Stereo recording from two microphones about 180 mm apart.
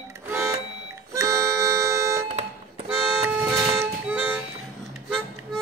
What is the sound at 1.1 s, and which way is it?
Music, 15° right (ahead or behind).